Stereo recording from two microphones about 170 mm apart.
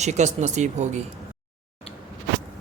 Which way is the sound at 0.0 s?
45° right (ahead or behind).